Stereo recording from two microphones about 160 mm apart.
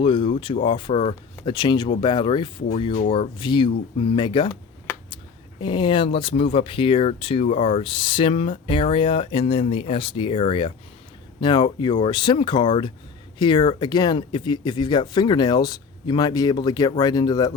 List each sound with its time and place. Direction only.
0.0 s speech: 30° left (ahead or behind)